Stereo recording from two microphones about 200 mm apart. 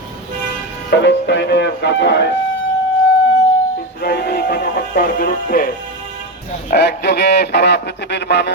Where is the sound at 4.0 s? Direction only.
55° left (ahead or behind).